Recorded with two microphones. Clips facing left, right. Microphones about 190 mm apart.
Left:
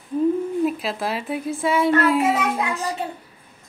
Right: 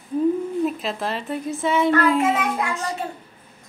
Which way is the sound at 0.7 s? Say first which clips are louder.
Left 1 dB; 5° left (ahead or behind).